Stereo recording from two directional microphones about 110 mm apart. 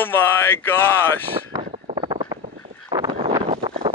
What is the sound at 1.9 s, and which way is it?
Vehicle, 45° right (ahead or behind).